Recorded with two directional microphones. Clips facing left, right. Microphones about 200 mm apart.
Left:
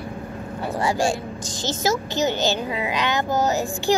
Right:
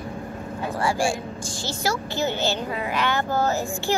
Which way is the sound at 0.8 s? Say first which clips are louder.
Left 2 dB; 20° left (ahead or behind).